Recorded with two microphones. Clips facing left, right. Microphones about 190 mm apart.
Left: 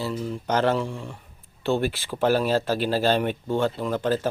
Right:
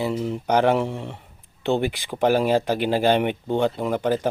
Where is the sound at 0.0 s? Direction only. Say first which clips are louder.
Right 4 dB; 20° right (ahead or behind).